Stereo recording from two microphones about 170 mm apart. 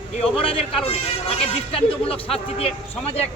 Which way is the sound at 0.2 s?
35° left (ahead or behind).